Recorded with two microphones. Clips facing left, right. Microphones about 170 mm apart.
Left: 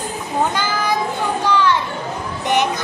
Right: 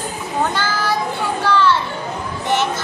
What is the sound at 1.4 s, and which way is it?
Children playing, 15° left (ahead or behind).